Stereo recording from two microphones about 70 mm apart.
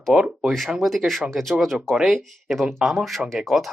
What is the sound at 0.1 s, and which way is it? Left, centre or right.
Speech, centre.